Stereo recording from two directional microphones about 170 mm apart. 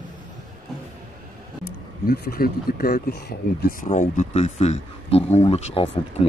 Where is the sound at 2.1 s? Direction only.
60° left (ahead or behind).